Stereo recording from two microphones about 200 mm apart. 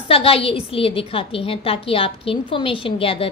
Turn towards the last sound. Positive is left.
turn(degrees=30)  # may be behind; listen again after turning